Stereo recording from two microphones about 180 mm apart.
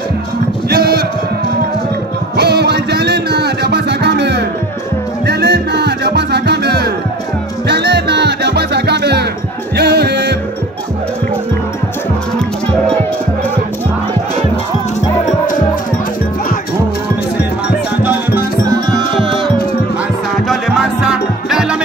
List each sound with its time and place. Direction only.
0.7 s music: 60° right (ahead or behind)
2.3 s music: 65° right (ahead or behind)
18.0 s music: 10° right (ahead or behind)
20.3 s music: centre (ahead or behind)